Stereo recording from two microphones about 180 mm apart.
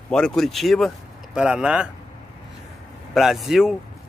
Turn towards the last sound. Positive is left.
turn(degrees=0)  # may be behind; listen again after turning